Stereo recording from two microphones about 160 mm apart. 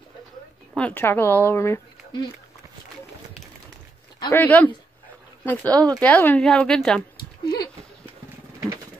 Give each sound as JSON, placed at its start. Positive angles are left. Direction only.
{"t": 0.7, "sound": "a woman's voice", "side_deg": 10}
{"t": 4.3, "sound": "a woman's voice", "side_deg": 10}
{"t": 5.7, "sound": "speech", "side_deg": -25}
{"t": 5.9, "sound": "a woman's voice", "side_deg": 10}
{"t": 7.4, "sound": "a sound", "side_deg": 25}